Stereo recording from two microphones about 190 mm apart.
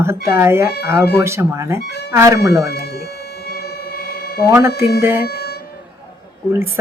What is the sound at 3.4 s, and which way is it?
Music, 55° left (ahead or behind).